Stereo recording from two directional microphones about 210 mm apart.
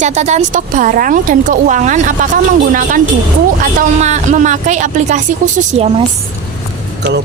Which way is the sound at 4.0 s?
35° right (ahead or behind).